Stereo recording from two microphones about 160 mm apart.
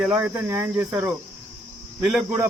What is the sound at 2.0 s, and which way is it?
Speech, centre (ahead or behind).